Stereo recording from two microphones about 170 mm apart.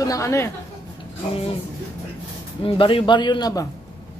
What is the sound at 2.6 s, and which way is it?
A man's voice, 30° left (ahead or behind).